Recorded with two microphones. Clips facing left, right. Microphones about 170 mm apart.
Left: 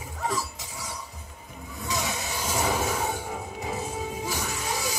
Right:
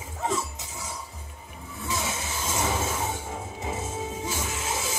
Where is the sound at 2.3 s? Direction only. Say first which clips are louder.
Left 2 dB; 15° left (ahead or behind).